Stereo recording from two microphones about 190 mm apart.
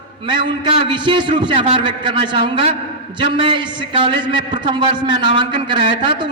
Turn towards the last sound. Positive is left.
turn(degrees=-25)  # may be behind; listen again after turning